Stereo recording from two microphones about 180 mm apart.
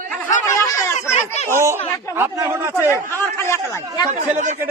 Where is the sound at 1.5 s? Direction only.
15° right (ahead or behind).